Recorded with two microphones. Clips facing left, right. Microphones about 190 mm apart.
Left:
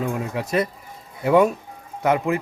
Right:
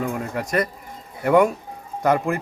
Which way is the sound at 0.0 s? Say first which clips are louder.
Even; 15° left (ahead or behind).